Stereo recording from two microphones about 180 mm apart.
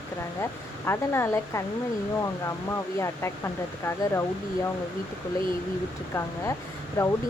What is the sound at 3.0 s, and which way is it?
Speech, 15° left (ahead or behind).